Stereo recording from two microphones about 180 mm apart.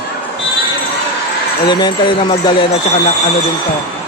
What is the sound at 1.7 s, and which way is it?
Speech, 25° left (ahead or behind).